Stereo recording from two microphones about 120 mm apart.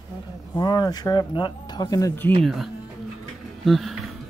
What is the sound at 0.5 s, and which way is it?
Speech, 35° left (ahead or behind).